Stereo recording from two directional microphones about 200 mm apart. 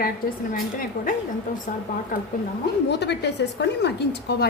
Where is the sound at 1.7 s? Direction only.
40° left (ahead or behind).